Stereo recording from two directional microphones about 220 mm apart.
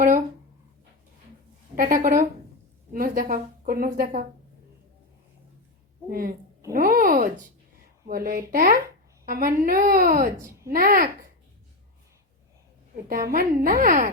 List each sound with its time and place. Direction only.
1.7 s a woman's voice: 40° right (ahead or behind)
6.1 s a woman's voice: 40° right (ahead or behind)
13.1 s a woman's voice: 40° right (ahead or behind)